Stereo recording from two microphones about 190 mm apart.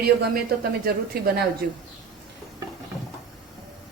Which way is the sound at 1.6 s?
50° right (ahead or behind).